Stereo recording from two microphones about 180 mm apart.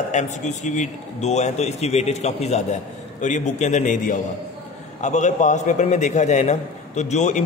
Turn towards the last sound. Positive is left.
turn(degrees=40)  # may be behind; listen again after turning